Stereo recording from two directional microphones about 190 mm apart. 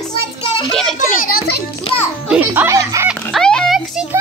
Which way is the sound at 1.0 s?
50° left (ahead or behind).